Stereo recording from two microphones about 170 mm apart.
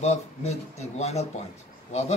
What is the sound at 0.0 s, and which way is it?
Speech, 40° left (ahead or behind).